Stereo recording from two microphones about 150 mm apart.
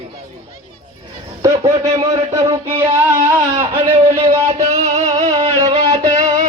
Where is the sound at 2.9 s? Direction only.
15° right (ahead or behind).